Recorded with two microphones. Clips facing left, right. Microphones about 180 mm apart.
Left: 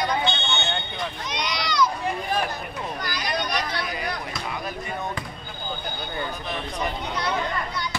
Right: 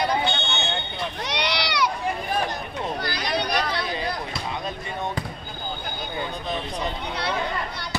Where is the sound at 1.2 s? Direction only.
70° right (ahead or behind).